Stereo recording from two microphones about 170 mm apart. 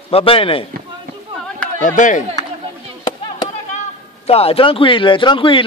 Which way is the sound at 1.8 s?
50° left (ahead or behind).